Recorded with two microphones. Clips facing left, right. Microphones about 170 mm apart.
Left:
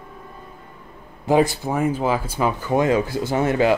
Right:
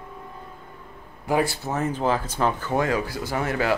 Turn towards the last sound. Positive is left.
turn(degrees=25)  # may be behind; listen again after turning